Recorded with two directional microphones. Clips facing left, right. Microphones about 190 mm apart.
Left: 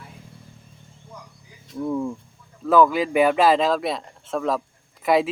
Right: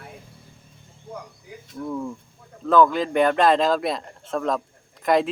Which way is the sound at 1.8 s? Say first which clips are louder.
Left 4 dB; 15° left (ahead or behind).